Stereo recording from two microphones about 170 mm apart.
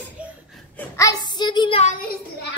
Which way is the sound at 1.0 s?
20° left (ahead or behind).